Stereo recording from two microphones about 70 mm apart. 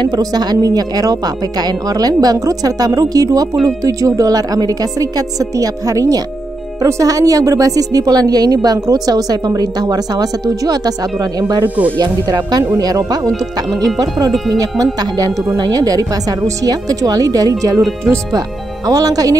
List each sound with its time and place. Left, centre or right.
0.1 s speech: right
14.6 s speech: right
18.9 s speech: right